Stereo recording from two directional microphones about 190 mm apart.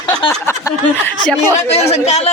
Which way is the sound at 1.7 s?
35° left (ahead or behind).